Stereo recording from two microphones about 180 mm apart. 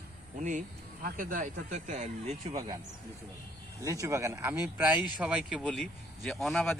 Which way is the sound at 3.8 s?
20° right (ahead or behind).